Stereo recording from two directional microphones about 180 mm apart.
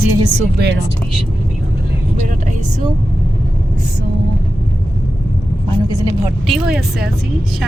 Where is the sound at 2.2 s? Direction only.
45° right (ahead or behind).